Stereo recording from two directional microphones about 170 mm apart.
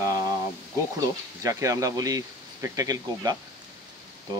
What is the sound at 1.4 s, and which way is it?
Speech, 20° right (ahead or behind).